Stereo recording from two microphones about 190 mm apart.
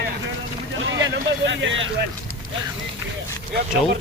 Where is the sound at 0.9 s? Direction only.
75° right (ahead or behind).